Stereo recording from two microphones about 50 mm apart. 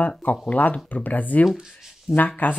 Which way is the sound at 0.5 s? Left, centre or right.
Left.